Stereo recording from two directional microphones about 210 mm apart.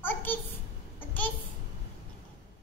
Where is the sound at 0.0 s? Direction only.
10° left (ahead or behind).